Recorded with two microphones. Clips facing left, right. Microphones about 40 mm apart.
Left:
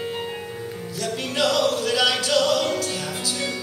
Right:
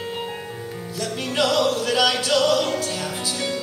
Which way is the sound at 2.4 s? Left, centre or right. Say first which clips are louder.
Right 1 dB; centre.